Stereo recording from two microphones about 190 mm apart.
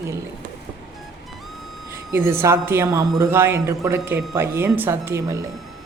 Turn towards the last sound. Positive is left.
turn(degrees=-15)  # may be behind; listen again after turning